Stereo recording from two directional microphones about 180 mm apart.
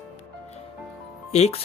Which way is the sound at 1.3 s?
35° left (ahead or behind).